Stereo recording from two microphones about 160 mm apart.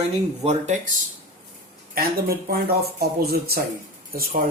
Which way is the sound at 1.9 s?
65° right (ahead or behind).